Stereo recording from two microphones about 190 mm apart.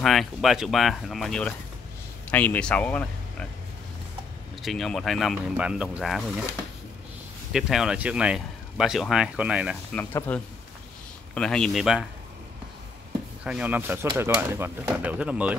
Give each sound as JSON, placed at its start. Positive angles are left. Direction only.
{"t": 0.0, "sound": "speech", "side_deg": 0}
{"t": 4.6, "sound": "speech", "side_deg": 0}
{"t": 7.5, "sound": "speech", "side_deg": 0}
{"t": 9.9, "sound": "speech", "side_deg": 10}
{"t": 13.4, "sound": "speech", "side_deg": -5}